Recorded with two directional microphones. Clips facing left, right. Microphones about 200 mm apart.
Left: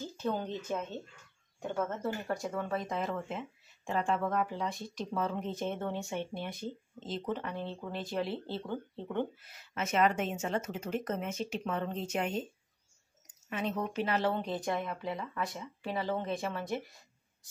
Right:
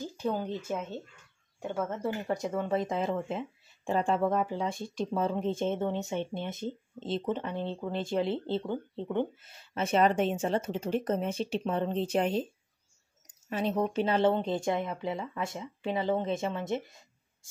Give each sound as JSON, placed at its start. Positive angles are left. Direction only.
{"t": 0.0, "sound": "speech", "side_deg": -10}
{"t": 13.5, "sound": "speech", "side_deg": -35}